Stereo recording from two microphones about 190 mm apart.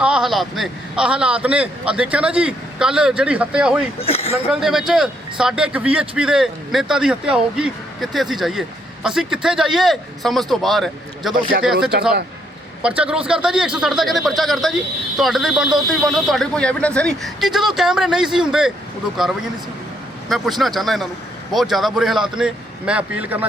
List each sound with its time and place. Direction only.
0.0 s a man's voice: 5° right (ahead or behind)
4.0 s a sound: 30° left (ahead or behind)
4.4 s a man's voice: centre (ahead or behind)
20.3 s a man's voice: centre (ahead or behind)